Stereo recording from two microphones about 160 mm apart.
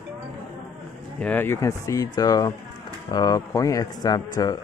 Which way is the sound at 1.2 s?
10° left (ahead or behind).